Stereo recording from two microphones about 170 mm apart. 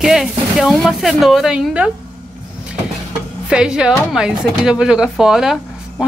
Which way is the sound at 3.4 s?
5° right (ahead or behind).